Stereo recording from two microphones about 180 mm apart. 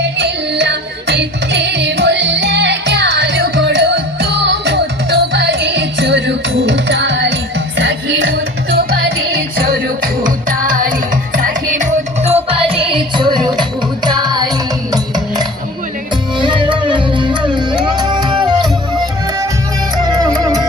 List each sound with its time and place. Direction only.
0.2 s music: 75° right (ahead or behind)
9.6 s music: 50° right (ahead or behind); by 18.7 s 25° right (ahead or behind)
20.0 s music: 20° right (ahead or behind)